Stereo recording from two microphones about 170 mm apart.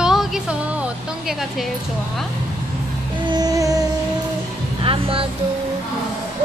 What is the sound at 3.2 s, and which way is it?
Music, 25° right (ahead or behind).